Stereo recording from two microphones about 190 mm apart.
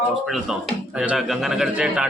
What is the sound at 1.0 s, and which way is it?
A man's voice, centre (ahead or behind).